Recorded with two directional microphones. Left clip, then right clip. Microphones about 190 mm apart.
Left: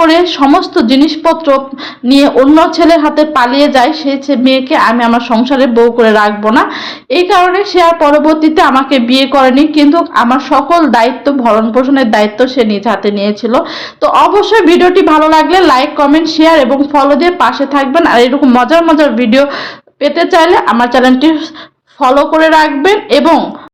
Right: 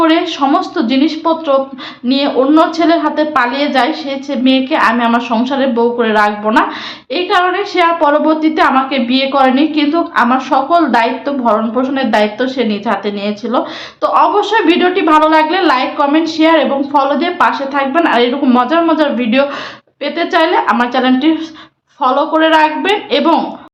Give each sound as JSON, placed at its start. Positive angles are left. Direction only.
{"t": 0.0, "sound": "a woman's voice", "side_deg": 30}